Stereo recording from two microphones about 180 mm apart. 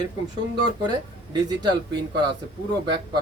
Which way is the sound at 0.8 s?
25° right (ahead or behind).